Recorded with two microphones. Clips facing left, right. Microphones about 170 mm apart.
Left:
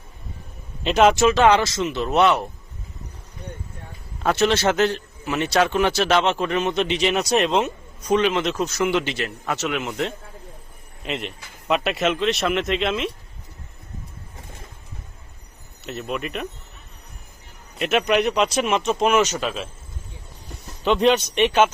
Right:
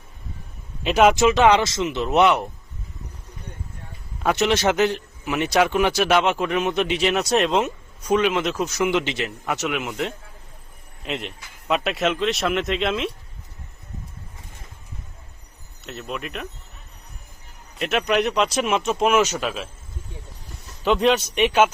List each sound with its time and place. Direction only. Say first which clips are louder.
0.9 s a man's voice: even; 10° right (ahead or behind)
4.2 s a man's voice: left 1 dB; 15° right (ahead or behind)
15.8 s speech: left 3 dB; centre (ahead or behind)
17.7 s speech: left 2 dB; centre (ahead or behind)
20.8 s speech: left 1 dB; centre (ahead or behind)